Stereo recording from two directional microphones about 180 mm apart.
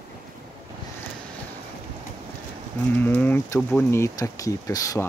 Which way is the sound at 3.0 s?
10° left (ahead or behind).